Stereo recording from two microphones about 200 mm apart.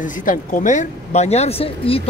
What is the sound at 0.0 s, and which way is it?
Speech, 40° left (ahead or behind).